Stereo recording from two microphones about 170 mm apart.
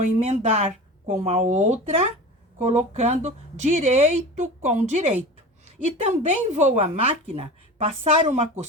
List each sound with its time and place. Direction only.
0.0 s speech: 40° right (ahead or behind)